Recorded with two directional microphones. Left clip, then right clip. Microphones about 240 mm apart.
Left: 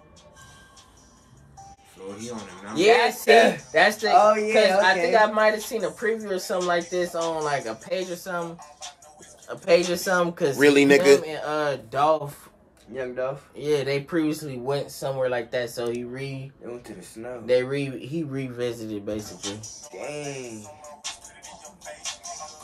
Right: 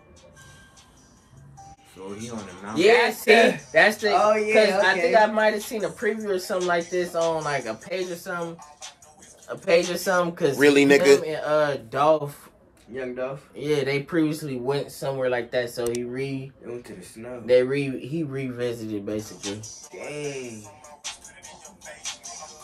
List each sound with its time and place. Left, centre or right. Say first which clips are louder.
3.0 s speech: even; centre
4.2 s a man's voice: even; centre
9.8 s a man's voice: even; centre
12.9 s speech: left 1 dB; centre
13.6 s speech: even; centre
19.3 s speech: right 1 dB; left
20.0 s speech: right 1 dB; centre
20.8 s music: even; left